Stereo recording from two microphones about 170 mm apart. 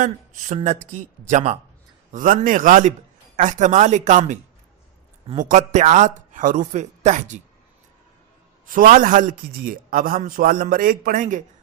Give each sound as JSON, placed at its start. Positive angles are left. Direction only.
{"t": 0.0, "sound": "a man's voice", "side_deg": -45}
{"t": 5.4, "sound": "a man's voice", "side_deg": -45}
{"t": 8.6, "sound": "a man's voice", "side_deg": -50}